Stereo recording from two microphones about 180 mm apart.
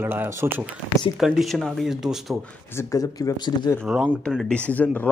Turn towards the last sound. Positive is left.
turn(degrees=10)  # may be behind; listen again after turning